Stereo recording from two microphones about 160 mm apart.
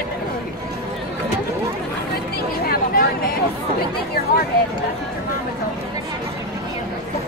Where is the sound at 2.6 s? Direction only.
65° left (ahead or behind).